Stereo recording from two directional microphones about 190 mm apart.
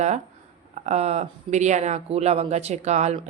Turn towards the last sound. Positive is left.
turn(degrees=-35)  # may be behind; listen again after turning